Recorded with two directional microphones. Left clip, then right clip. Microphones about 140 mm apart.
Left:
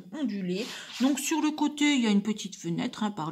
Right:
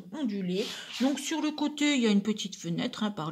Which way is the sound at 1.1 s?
15° left (ahead or behind).